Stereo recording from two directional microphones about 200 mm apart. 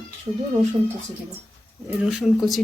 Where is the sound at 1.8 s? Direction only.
5° right (ahead or behind).